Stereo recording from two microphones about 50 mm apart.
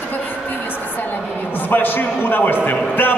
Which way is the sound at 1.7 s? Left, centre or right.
Left.